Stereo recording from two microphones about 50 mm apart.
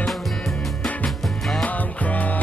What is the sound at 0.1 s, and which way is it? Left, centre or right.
Music, centre.